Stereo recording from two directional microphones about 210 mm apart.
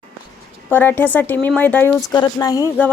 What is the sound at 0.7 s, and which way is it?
Speech, 10° left (ahead or behind).